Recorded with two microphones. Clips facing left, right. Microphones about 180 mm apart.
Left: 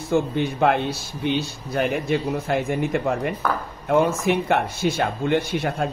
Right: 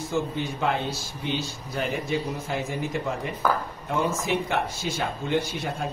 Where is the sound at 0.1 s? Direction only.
60° left (ahead or behind).